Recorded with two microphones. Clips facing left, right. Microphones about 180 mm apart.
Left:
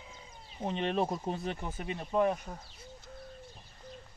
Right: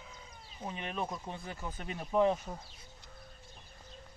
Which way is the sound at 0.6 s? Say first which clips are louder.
Left 7 dB; 30° left (ahead or behind).